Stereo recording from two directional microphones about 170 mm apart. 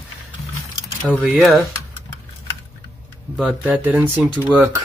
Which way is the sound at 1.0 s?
5° left (ahead or behind).